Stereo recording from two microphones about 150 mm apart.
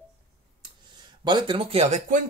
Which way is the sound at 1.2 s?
30° right (ahead or behind).